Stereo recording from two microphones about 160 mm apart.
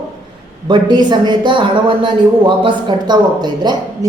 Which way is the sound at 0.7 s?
25° right (ahead or behind).